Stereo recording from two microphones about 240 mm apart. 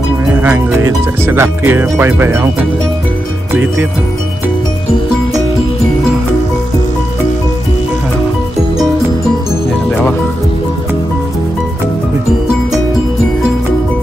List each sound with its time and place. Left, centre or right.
0.3 s speech: centre